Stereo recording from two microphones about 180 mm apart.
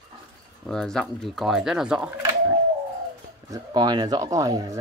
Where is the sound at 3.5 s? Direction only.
25° right (ahead or behind).